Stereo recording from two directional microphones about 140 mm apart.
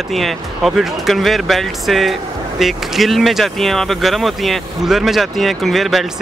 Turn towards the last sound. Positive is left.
turn(degrees=0)  # may be behind; listen again after turning